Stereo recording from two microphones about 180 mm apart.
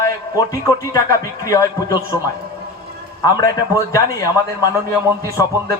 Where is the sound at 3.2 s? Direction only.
20° left (ahead or behind).